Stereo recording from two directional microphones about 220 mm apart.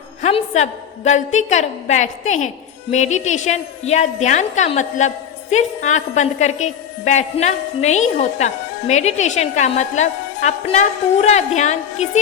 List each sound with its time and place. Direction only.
0.2 s a woman's voice: 30° left (ahead or behind)